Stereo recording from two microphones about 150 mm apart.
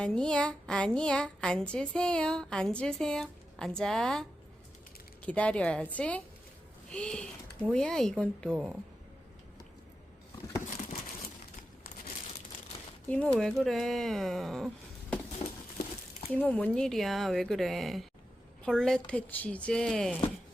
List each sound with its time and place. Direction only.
0.0 s a woman's voice: 5° left (ahead or behind)
8.5 s a woman's voice: 5° right (ahead or behind)
13.1 s a woman's voice: 10° left (ahead or behind)
15.4 s a sound: 50° left (ahead or behind)
16.3 s a woman's voice: 10° left (ahead or behind)